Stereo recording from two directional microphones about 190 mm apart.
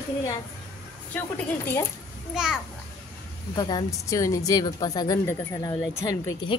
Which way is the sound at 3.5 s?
20° left (ahead or behind).